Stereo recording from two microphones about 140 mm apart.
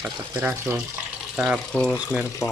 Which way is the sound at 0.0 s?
10° right (ahead or behind).